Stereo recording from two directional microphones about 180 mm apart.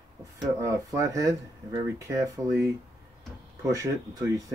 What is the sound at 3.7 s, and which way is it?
Speech, 20° right (ahead or behind).